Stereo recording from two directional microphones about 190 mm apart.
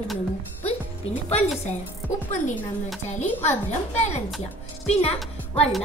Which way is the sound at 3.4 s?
35° left (ahead or behind).